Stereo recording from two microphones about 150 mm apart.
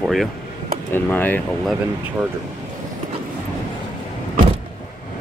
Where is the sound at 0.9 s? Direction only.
10° left (ahead or behind).